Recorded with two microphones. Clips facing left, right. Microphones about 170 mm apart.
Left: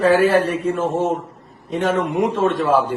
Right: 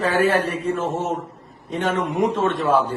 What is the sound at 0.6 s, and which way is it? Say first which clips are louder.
Speech: left 3 dB; 35° left (ahead or behind).